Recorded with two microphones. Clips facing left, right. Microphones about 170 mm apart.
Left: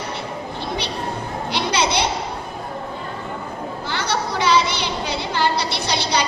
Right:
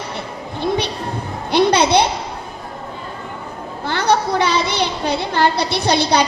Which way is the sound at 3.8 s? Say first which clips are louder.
Right 8 dB; 55° right (ahead or behind).